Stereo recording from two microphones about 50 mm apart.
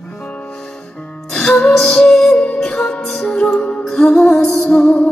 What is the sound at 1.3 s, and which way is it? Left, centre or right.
Music, centre.